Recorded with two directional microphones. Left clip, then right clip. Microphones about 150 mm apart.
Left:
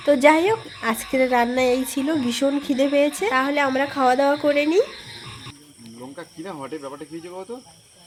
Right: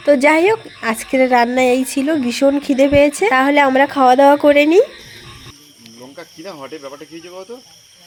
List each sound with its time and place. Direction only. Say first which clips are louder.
0.0 s speech: right 4 dB; 25° right (ahead or behind); by 4.9 s 40° right (ahead or behind)
6.1 s speech: right 3 dB; 15° left (ahead or behind)